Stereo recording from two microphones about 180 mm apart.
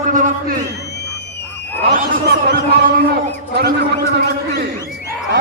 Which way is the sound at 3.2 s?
60° right (ahead or behind).